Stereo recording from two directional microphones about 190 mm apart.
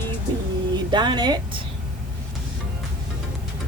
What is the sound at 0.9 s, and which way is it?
Speech, 25° right (ahead or behind).